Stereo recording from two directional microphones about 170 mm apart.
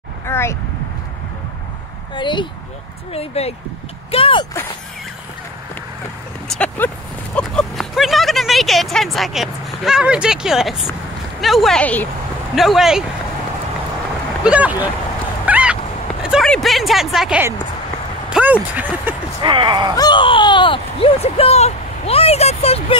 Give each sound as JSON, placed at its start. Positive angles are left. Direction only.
{"t": 0.3, "sound": "speech", "side_deg": 15}
{"t": 2.1, "sound": "speech", "side_deg": 30}
{"t": 6.5, "sound": "speech", "side_deg": 5}
{"t": 14.4, "sound": "speech", "side_deg": -10}
{"t": 15.4, "sound": "a sound", "side_deg": -10}
{"t": 18.3, "sound": "speech", "side_deg": -10}
{"t": 19.4, "sound": "speech", "side_deg": -30}
{"t": 20.0, "sound": "speech", "side_deg": 30}